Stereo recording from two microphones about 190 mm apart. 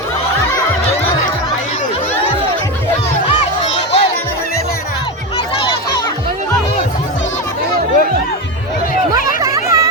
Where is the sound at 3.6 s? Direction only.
30° left (ahead or behind).